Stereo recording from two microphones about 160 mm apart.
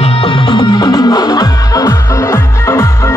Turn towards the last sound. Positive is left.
turn(degrees=20)  # may be behind; listen again after turning